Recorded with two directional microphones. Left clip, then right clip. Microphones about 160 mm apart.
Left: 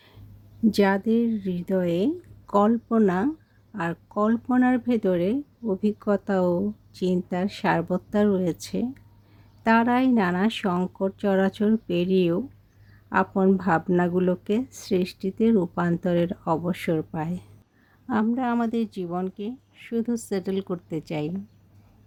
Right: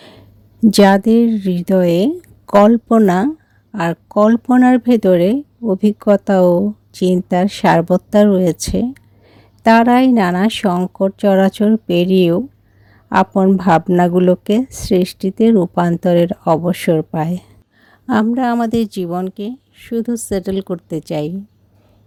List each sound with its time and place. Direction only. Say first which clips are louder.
0.7 s speech: right 12 dB; 55° right (ahead or behind); by 21.3 s 35° right (ahead or behind)